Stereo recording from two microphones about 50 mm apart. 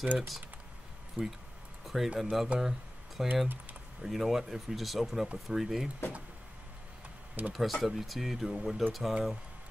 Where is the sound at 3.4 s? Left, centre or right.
Right.